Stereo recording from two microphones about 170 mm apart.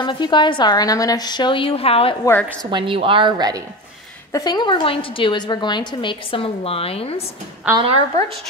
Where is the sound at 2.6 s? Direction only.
25° right (ahead or behind).